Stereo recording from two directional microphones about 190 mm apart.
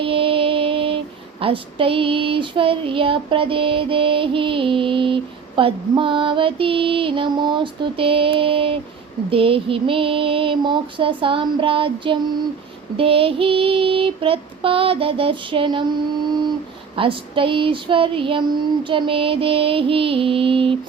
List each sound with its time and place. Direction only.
0.0 s mantra: 30° right (ahead or behind)
1.4 s child singing: 30° right (ahead or behind)
16.9 s child singing: 25° right (ahead or behind)